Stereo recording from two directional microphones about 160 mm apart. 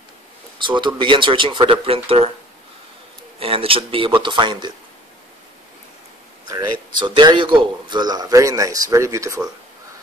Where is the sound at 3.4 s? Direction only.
35° right (ahead or behind).